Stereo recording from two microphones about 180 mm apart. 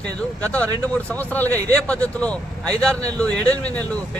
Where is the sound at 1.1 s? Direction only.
10° left (ahead or behind).